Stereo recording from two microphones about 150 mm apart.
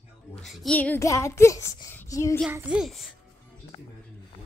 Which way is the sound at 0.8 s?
10° left (ahead or behind).